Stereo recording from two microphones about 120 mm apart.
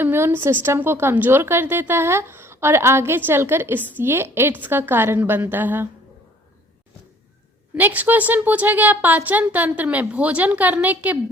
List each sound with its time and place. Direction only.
0.0 s a woman's voice: 20° right (ahead or behind)
7.8 s speech: 15° right (ahead or behind)